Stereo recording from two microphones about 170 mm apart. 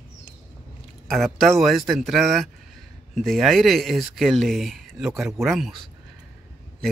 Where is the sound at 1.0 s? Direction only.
Centre (ahead or behind).